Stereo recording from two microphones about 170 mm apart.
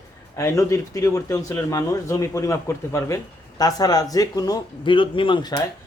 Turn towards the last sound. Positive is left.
turn(degrees=25)  # may be behind; listen again after turning